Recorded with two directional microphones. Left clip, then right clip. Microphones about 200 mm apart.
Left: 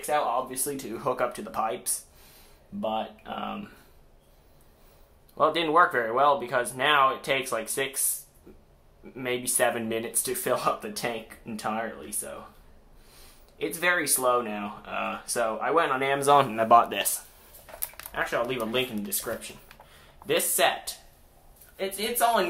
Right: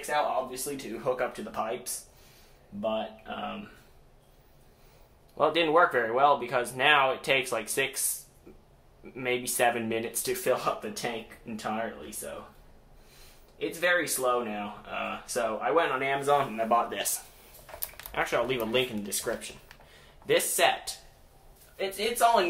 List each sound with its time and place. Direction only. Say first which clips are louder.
0.7 s speech: left 1 dB; 35° left (ahead or behind)
5.4 s speech: left 1 dB; 10° left (ahead or behind)
9.1 s speech: even; 10° left (ahead or behind)
13.6 s speech: left 1 dB; 20° left (ahead or behind)
16.3 s speech: left 7 dB; 55° left (ahead or behind)
18.1 s speech: even; 10° right (ahead or behind); by 22.5 s 15° left (ahead or behind)